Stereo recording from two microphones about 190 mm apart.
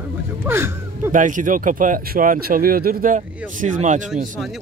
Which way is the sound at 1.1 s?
45° right (ahead or behind).